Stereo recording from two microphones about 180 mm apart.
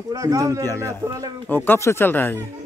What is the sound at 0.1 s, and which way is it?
Speech, 20° right (ahead or behind).